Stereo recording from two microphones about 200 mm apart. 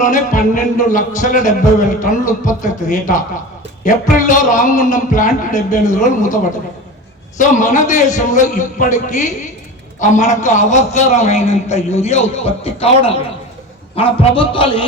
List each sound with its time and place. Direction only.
0.0 s a man's voice: 40° left (ahead or behind)